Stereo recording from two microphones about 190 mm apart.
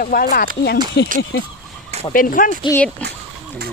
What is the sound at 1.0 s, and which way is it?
Speech, 65° left (ahead or behind).